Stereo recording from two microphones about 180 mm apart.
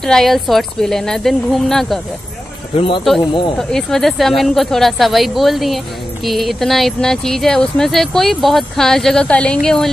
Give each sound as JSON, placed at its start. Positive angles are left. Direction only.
{"t": 0.0, "sound": "speech", "side_deg": 0}
{"t": 2.7, "sound": "speech", "side_deg": 30}
{"t": 3.5, "sound": "speech", "side_deg": 5}